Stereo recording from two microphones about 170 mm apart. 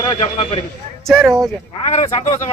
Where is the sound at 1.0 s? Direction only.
Centre (ahead or behind).